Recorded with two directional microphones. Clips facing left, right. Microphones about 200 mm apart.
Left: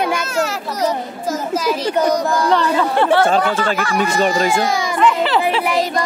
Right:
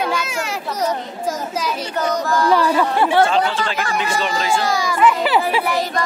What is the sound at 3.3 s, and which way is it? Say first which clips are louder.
Speech: left 3 dB; 45° left (ahead or behind).